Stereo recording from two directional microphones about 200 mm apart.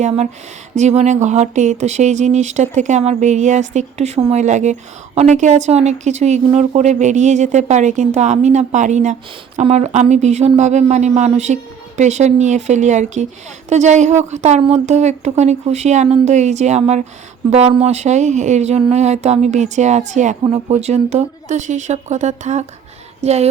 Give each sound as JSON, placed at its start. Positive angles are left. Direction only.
{"t": 0.8, "sound": "speech", "side_deg": -35}